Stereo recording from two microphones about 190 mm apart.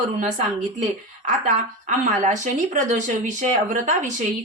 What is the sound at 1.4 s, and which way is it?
Speech, 45° right (ahead or behind).